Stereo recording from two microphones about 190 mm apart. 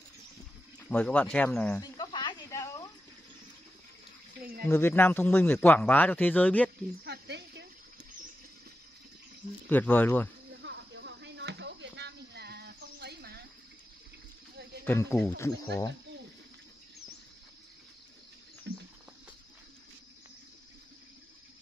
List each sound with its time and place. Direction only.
0.8 s a man's voice: 5° left (ahead or behind)
1.8 s snake: 20° left (ahead or behind)
4.4 s speech: 50° right (ahead or behind)
4.6 s a man's voice: 10° left (ahead or behind)
7.1 s a sound: 65° right (ahead or behind)
9.7 s a man's voice: 10° left (ahead or behind)
10.6 s a sound: 70° right (ahead or behind)
14.9 s a man's voice: 15° left (ahead or behind)
18.7 s a sound: 65° right (ahead or behind)